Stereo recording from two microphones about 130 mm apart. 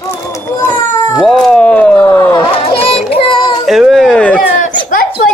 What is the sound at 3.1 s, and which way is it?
Child singing, 40° left (ahead or behind).